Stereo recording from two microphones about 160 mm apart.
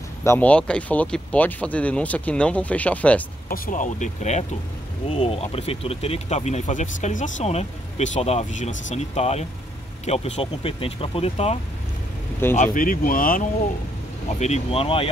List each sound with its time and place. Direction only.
0.2 s speech: 15° left (ahead or behind)
3.4 s speech: 65° left (ahead or behind); by 11.5 s 40° left (ahead or behind)
12.4 s speech: 15° left (ahead or behind)
12.7 s speech: 60° left (ahead or behind)
14.4 s speech: 40° left (ahead or behind)